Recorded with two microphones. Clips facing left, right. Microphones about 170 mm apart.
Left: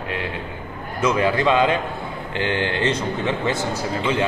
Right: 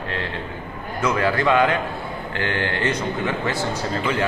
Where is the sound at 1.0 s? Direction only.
20° left (ahead or behind).